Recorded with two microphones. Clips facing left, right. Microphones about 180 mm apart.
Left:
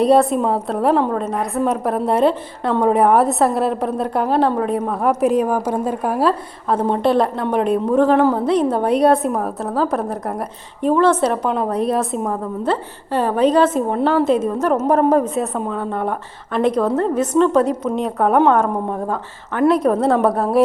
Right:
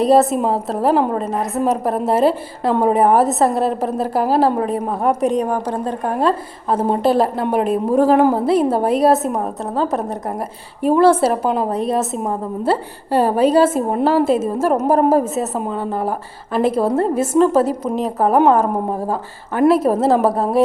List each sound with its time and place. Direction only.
0.0 s a woman's voice: centre (ahead or behind)